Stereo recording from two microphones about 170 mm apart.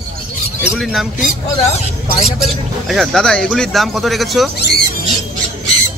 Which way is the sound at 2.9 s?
Centre (ahead or behind).